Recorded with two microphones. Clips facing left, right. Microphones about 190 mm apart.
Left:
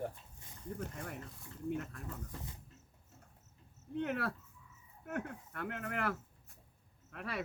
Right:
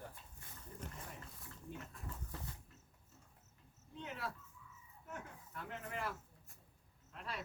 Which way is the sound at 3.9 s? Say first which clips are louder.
Left 10 dB; 65° left (ahead or behind).